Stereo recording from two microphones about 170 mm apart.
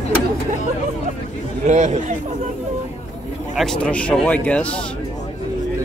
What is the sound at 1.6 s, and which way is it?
Speech, 45° right (ahead or behind).